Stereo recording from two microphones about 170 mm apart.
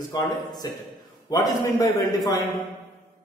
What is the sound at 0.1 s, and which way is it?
A man's voice, 25° left (ahead or behind).